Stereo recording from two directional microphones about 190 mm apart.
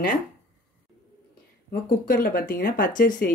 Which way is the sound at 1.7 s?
50° left (ahead or behind).